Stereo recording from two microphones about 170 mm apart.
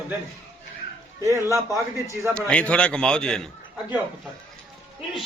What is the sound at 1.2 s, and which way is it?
A man's voice, 15° right (ahead or behind).